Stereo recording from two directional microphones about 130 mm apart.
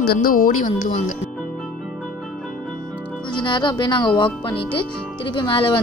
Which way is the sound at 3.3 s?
35° left (ahead or behind).